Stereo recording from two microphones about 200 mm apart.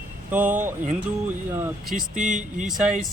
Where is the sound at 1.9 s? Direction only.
40° right (ahead or behind).